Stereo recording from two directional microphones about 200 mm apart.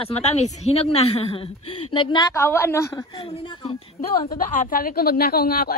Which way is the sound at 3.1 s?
25° left (ahead or behind).